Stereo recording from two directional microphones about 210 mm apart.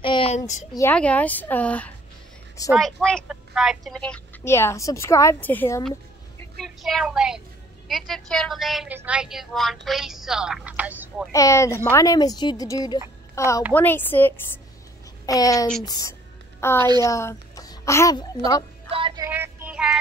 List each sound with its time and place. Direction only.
0.0 s a sound: 25° left (ahead or behind)
0.7 s a woman's voice: 10° left (ahead or behind)
6.6 s a woman's voice: centre (ahead or behind)
11.3 s a woman's voice: 15° left (ahead or behind)
15.9 s music: 15° left (ahead or behind)
17.0 s a child's voice: 15° left (ahead or behind)
18.9 s music: 25° right (ahead or behind)
19.2 s child singing: 10° right (ahead or behind)